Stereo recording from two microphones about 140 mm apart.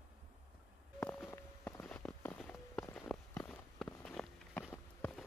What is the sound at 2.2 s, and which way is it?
Walk, 10° left (ahead or behind).